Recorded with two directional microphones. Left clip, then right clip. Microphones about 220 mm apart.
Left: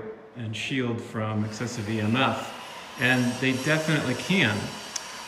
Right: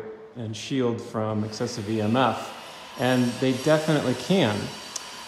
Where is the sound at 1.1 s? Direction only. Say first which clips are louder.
Right 3 dB; 10° right (ahead or behind).